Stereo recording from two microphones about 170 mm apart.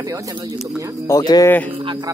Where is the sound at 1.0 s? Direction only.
20° left (ahead or behind).